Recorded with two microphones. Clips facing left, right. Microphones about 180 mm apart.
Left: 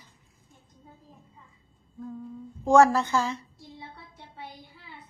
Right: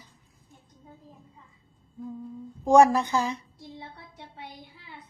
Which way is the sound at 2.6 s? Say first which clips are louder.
Right 1 dB; 15° right (ahead or behind).